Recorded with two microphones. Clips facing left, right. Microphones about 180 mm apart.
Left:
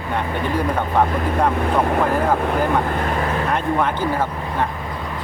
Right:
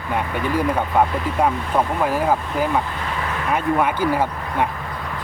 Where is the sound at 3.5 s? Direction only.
10° right (ahead or behind).